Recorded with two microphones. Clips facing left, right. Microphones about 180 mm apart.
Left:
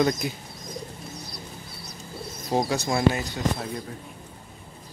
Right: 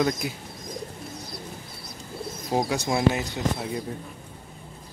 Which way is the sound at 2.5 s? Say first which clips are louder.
Left 1 dB; 5° right (ahead or behind).